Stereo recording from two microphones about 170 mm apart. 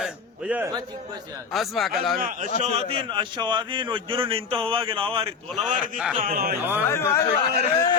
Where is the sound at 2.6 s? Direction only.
40° right (ahead or behind).